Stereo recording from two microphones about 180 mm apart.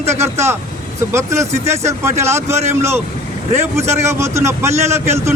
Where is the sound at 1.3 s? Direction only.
40° right (ahead or behind).